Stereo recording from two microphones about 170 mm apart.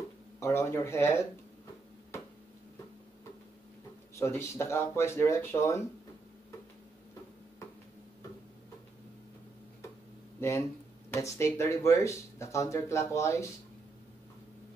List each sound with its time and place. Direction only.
0.4 s speech: 15° left (ahead or behind)
4.1 s speech: 15° left (ahead or behind)
10.4 s speech: 15° left (ahead or behind)